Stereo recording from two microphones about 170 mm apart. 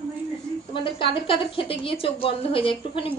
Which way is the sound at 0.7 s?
30° left (ahead or behind).